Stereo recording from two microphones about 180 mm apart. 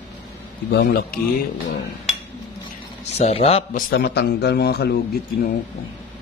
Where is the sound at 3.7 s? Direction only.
60° left (ahead or behind).